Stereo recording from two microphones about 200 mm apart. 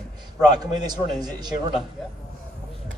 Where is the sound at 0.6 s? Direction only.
20° right (ahead or behind).